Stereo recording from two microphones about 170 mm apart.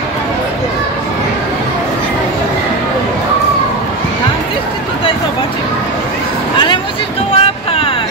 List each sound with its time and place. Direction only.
7.3 s vehicle: 35° left (ahead or behind)